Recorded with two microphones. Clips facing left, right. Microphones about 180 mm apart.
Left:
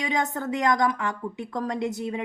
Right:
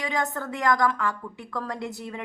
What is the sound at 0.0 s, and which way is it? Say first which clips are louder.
A woman's voice: left 2 dB; 20° left (ahead or behind).